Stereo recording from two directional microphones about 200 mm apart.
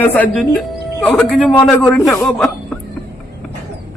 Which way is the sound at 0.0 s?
10° left (ahead or behind).